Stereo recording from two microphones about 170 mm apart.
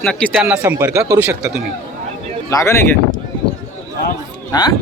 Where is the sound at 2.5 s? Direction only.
20° left (ahead or behind).